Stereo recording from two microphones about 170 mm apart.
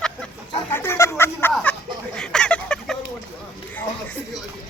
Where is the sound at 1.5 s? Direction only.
5° left (ahead or behind).